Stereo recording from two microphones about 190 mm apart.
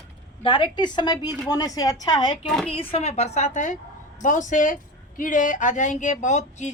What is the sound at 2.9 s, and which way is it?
A woman's voice, 35° left (ahead or behind).